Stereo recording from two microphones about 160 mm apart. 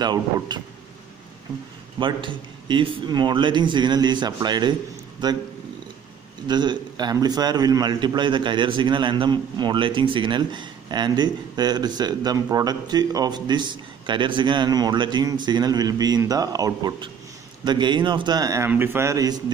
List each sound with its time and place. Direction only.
0.0 s a man's voice: 25° right (ahead or behind)
2.0 s a man's voice: 30° right (ahead or behind)
6.4 s a man's voice: 25° right (ahead or behind)